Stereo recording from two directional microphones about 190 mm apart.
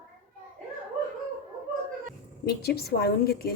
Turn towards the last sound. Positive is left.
turn(degrees=55)  # may be behind; listen again after turning